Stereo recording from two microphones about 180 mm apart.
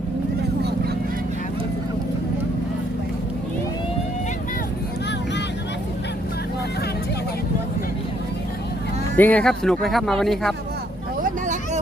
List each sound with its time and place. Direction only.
9.1 s speech: 10° left (ahead or behind)
11.2 s vehicle: 45° right (ahead or behind)